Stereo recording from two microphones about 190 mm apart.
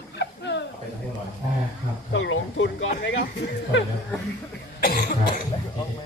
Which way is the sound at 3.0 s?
70° left (ahead or behind).